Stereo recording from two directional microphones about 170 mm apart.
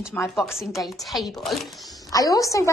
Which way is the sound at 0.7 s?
Centre (ahead or behind).